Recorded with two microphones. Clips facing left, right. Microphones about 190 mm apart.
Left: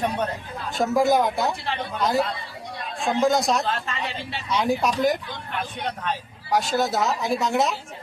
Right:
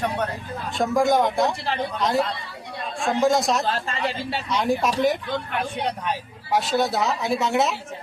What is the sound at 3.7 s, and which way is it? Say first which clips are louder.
Speech: right 3 dB; 35° right (ahead or behind).